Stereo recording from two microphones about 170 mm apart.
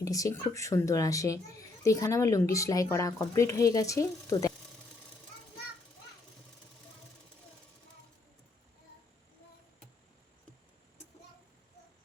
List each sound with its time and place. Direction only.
0.0 s speech: 20° left (ahead or behind)